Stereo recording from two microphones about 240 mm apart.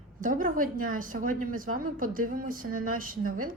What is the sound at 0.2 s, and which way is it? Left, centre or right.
A woman's voice, right.